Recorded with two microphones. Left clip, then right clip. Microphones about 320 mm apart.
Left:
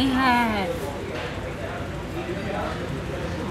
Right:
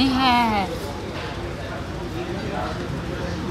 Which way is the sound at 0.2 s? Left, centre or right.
Right.